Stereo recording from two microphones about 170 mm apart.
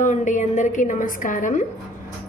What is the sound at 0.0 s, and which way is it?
A woman's voice, 45° left (ahead or behind).